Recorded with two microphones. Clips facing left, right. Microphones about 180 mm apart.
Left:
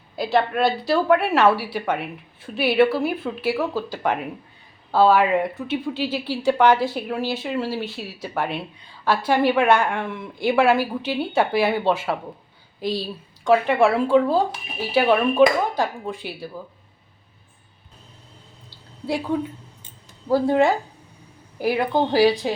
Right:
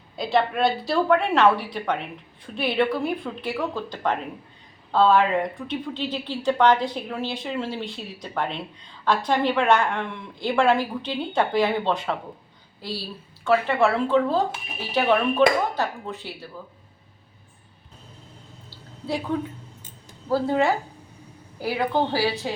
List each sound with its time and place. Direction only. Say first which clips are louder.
0.2 s a woman's voice: left 2 dB; centre (ahead or behind)
19.3 s a woman's voice: left 3 dB; 10° left (ahead or behind)